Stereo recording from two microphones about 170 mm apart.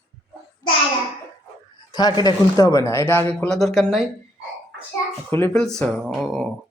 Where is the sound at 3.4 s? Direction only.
Centre (ahead or behind).